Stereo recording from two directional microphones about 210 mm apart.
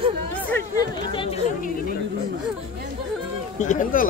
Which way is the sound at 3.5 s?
35° left (ahead or behind).